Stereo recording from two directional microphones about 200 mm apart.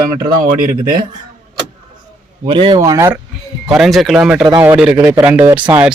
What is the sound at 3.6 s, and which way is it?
Speech, centre (ahead or behind).